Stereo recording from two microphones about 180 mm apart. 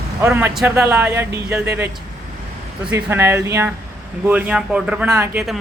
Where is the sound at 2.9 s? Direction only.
15° right (ahead or behind).